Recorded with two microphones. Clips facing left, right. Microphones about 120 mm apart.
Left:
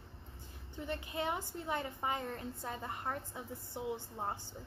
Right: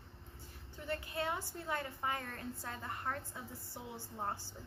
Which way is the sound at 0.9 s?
20° left (ahead or behind).